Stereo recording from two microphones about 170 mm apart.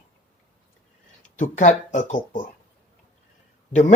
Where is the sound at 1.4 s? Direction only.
45° left (ahead or behind).